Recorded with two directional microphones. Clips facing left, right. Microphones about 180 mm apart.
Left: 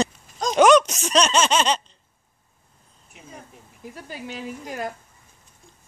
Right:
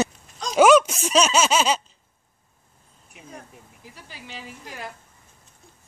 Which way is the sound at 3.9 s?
50° left (ahead or behind).